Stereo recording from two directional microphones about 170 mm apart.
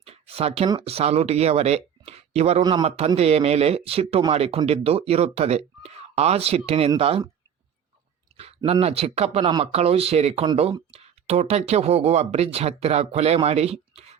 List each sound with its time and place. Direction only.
0.0 s a sound: 35° right (ahead or behind)
0.7 s speech: 35° right (ahead or behind)
8.4 s speech: 35° right (ahead or behind)